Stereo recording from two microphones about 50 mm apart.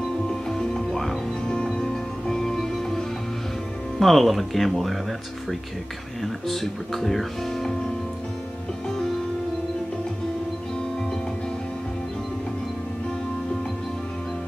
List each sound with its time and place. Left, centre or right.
0.0 s music: centre
1.5 s music: centre
4.0 s speech: centre
6.2 s speech: centre